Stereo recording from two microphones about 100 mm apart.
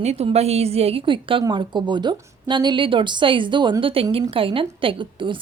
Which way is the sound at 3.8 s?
65° right (ahead or behind).